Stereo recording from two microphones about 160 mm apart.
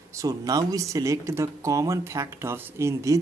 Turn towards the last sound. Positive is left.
turn(degrees=-20)  # may be behind; listen again after turning